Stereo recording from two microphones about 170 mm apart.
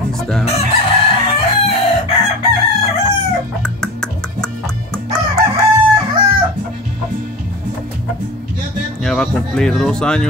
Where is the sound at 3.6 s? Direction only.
5° left (ahead or behind).